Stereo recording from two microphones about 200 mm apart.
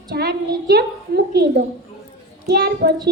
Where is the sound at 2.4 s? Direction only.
55° right (ahead or behind).